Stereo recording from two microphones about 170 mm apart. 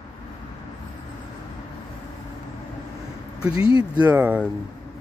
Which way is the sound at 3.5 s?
30° left (ahead or behind).